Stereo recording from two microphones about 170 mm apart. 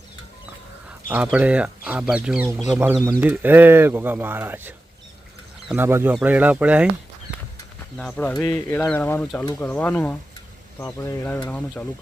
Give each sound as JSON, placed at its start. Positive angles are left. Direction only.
{"t": 1.0, "sound": "speech", "side_deg": -10}
{"t": 5.7, "sound": "speech", "side_deg": -15}
{"t": 7.9, "sound": "speech", "side_deg": 5}